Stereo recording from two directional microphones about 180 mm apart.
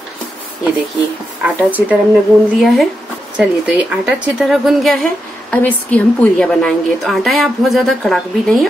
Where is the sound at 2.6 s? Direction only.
Centre (ahead or behind).